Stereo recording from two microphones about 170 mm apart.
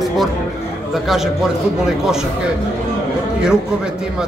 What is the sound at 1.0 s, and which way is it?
Speech, centre (ahead or behind).